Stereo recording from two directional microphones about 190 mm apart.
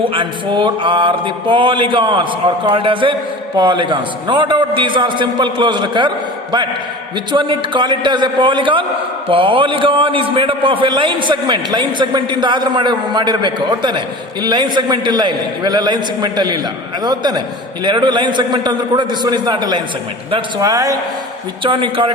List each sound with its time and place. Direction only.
0.0 s a man's voice: 25° right (ahead or behind)
7.3 s a man's voice: 25° right (ahead or behind)